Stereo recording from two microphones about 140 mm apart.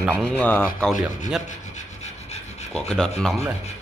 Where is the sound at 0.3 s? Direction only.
10° left (ahead or behind).